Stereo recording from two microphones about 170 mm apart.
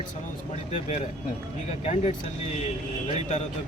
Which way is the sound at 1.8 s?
40° left (ahead or behind).